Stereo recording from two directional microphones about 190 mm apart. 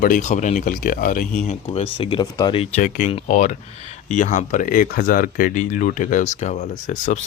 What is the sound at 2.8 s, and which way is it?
Speech, 45° left (ahead or behind).